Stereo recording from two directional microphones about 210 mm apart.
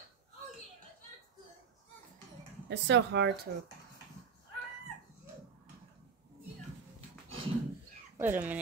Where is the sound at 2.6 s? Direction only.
55° right (ahead or behind).